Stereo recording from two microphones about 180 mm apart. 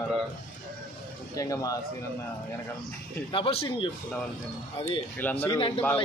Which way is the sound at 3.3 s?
30° left (ahead or behind).